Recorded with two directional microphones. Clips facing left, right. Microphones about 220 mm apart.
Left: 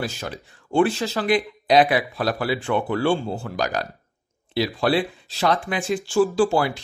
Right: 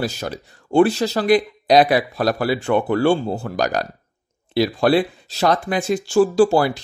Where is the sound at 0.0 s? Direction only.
40° right (ahead or behind).